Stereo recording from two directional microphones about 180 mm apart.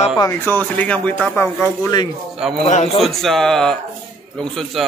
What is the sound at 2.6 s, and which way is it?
Speech, 35° left (ahead or behind).